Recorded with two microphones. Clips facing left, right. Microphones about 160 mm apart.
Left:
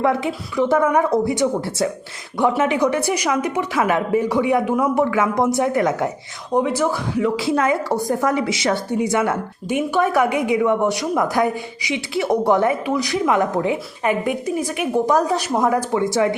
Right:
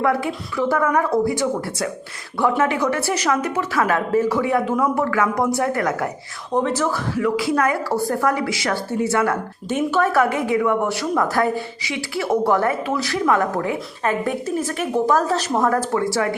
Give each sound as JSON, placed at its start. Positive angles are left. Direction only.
{"t": 0.0, "sound": "a woman's voice", "side_deg": 20}